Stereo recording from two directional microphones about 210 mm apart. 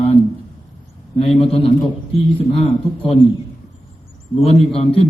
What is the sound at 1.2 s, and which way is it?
A man's voice, 30° left (ahead or behind).